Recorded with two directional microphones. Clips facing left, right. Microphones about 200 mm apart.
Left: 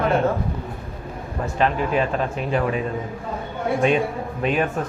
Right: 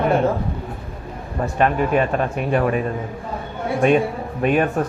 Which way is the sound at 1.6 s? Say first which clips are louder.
Right 3 dB; 50° right (ahead or behind).